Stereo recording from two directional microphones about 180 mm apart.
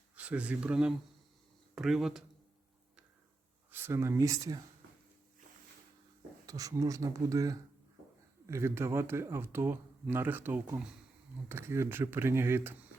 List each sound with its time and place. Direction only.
0.2 s speech: 5° right (ahead or behind)
3.7 s speech: 10° right (ahead or behind)
6.4 s speech: 20° right (ahead or behind)